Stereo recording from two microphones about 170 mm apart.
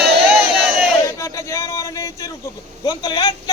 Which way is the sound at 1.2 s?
15° left (ahead or behind).